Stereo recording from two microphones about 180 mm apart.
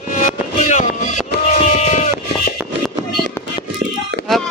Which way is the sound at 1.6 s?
40° left (ahead or behind).